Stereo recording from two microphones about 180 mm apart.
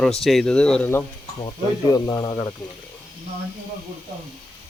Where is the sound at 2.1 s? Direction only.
15° left (ahead or behind).